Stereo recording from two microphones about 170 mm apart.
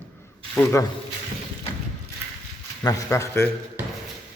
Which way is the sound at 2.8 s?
20° left (ahead or behind).